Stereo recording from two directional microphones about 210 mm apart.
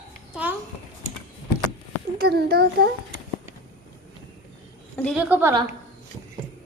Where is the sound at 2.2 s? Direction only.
50° right (ahead or behind).